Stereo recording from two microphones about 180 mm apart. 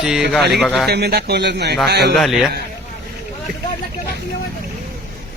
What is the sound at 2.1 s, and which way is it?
Speech, centre (ahead or behind).